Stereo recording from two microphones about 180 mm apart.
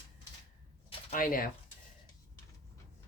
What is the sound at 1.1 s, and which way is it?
Speech, 50° left (ahead or behind).